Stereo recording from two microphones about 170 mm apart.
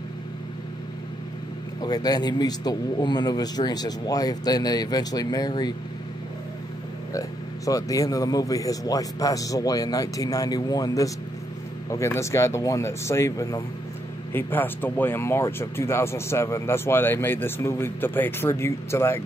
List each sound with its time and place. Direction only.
1.8 s speech: 20° left (ahead or behind)
7.2 s speech: 20° left (ahead or behind)